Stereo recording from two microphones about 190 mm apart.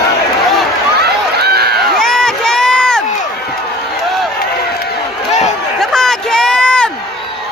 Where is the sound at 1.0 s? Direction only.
55° right (ahead or behind).